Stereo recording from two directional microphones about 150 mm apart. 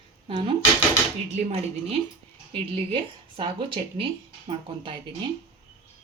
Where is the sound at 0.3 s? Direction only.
35° right (ahead or behind).